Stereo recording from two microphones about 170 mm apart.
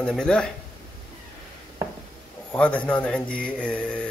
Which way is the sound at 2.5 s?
5° left (ahead or behind).